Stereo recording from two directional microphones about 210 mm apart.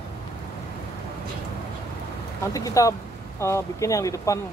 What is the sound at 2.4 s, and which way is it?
Speech, 15° left (ahead or behind).